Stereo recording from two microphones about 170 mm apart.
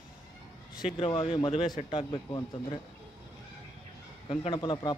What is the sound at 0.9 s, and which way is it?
Speech, 30° left (ahead or behind).